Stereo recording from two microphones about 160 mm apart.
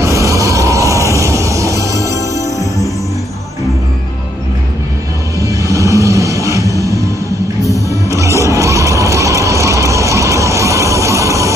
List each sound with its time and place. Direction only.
0.0 s a sound: 20° right (ahead or behind)
1.1 s music: 20° right (ahead or behind)
2.1 s music: 20° left (ahead or behind)
5.4 s music: 20° right (ahead or behind)